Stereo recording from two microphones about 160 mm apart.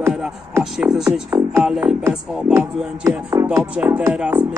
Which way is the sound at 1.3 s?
20° right (ahead or behind).